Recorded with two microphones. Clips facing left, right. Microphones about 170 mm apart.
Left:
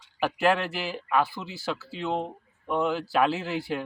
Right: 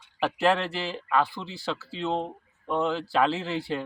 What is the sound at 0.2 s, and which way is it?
Speech, centre (ahead or behind).